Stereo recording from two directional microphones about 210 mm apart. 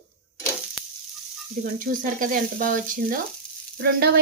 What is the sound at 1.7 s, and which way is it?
Speech, 40° right (ahead or behind).